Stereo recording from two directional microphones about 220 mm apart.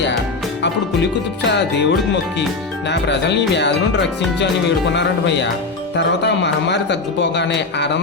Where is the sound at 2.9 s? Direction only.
50° left (ahead or behind).